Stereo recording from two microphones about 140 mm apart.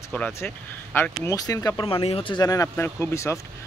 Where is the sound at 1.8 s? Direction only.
40° left (ahead or behind).